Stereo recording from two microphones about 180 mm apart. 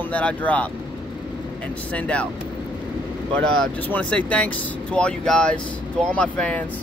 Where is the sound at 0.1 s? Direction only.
5° left (ahead or behind).